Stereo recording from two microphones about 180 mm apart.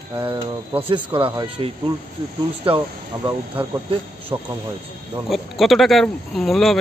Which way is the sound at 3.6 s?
30° right (ahead or behind).